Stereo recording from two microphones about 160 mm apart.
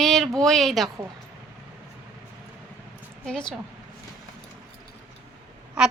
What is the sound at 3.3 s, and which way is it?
Speech, 5° left (ahead or behind).